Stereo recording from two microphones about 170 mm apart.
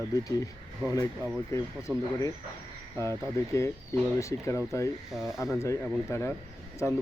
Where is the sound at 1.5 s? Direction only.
20° left (ahead or behind).